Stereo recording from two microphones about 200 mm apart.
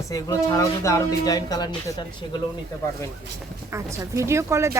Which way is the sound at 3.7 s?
15° right (ahead or behind).